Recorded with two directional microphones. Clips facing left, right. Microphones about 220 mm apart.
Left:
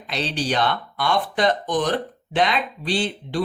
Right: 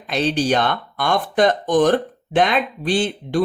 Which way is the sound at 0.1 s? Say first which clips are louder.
Right 6 dB; 50° right (ahead or behind).